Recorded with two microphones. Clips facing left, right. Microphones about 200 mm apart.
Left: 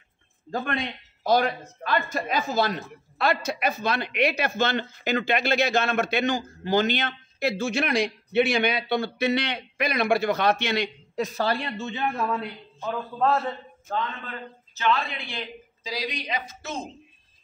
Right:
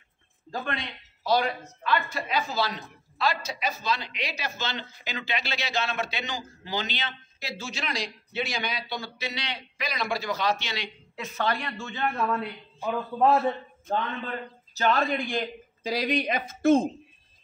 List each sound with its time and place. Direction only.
0.5 s a woman's voice: 50° left (ahead or behind)
11.1 s speech: 35° left (ahead or behind); by 12.0 s 20° left (ahead or behind)
12.4 s a man's voice: 15° right (ahead or behind)
14.8 s a man's voice: 45° right (ahead or behind)